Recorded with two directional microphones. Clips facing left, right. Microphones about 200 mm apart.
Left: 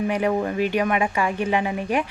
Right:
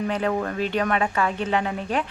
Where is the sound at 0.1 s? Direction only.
15° left (ahead or behind).